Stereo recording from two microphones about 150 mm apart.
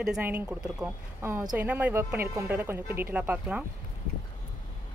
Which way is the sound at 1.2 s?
20° right (ahead or behind).